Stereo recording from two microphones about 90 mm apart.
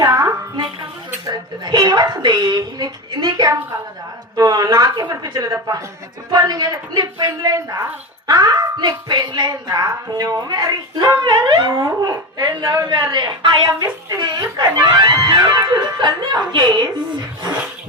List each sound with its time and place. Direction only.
0.0 s music: 40° right (ahead or behind)
1.3 s a woman's voice: 50° right (ahead or behind)
11.7 s a woman's voice: 40° right (ahead or behind); by 16.9 s 60° right (ahead or behind)